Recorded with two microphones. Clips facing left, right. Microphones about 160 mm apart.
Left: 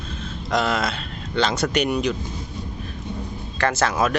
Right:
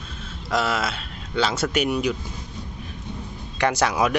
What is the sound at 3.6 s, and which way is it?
Speech, 15° right (ahead or behind).